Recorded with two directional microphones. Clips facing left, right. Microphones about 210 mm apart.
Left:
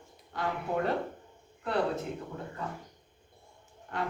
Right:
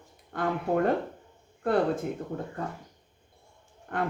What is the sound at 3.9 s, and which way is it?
Speech, 50° right (ahead or behind).